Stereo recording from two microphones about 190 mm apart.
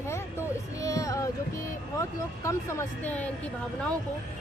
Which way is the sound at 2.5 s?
10° left (ahead or behind).